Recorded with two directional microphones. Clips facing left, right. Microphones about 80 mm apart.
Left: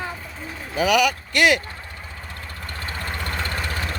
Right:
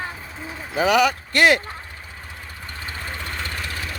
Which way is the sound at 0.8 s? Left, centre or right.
Right.